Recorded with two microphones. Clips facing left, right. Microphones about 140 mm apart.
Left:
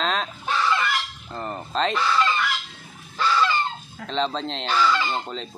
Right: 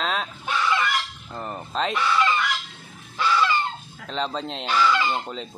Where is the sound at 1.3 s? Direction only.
5° right (ahead or behind).